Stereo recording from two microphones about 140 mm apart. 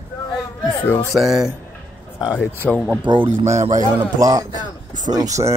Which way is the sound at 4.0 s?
25° right (ahead or behind).